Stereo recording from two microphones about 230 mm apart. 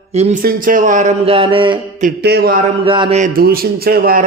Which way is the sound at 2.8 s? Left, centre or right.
Right.